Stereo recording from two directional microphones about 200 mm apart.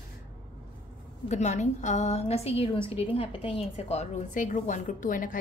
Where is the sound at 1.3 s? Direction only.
35° left (ahead or behind).